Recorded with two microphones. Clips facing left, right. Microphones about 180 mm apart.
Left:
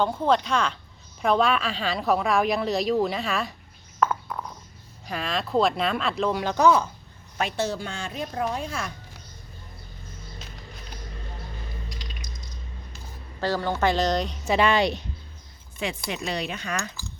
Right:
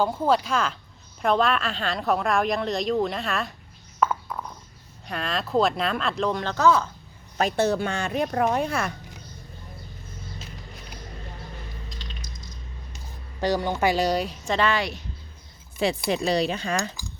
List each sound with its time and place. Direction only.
0.0 s speech: 5° right (ahead or behind)
4.0 s a sound: centre (ahead or behind)
5.0 s speech: centre (ahead or behind); by 6.9 s 15° left (ahead or behind)
7.5 s speech: 60° right (ahead or behind)
11.9 s a sound: 10° left (ahead or behind)
13.4 s a woman's voice: 15° right (ahead or behind)
14.4 s speech: 10° left (ahead or behind)
15.8 s speech: 35° right (ahead or behind)